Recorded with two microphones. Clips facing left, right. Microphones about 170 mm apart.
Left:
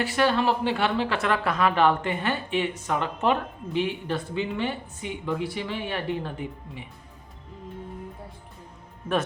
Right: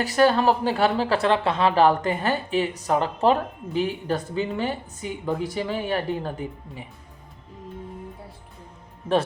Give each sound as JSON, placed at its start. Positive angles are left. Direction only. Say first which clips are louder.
{"t": 0.0, "sound": "speech", "louder": "right 4 dB", "side_deg": -40}